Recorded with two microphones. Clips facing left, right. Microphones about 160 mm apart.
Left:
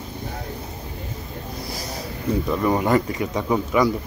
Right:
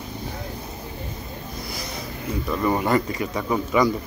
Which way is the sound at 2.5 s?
10° left (ahead or behind).